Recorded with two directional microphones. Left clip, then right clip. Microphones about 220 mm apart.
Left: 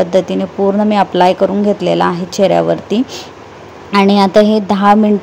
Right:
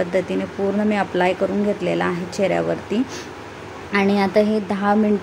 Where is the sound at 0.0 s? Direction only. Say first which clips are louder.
Left 8 dB; 25° left (ahead or behind).